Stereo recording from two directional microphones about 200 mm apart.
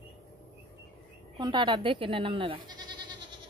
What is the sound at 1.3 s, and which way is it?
Speech, 20° right (ahead or behind).